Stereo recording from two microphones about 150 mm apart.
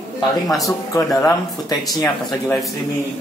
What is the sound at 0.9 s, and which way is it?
Speech, 20° left (ahead or behind).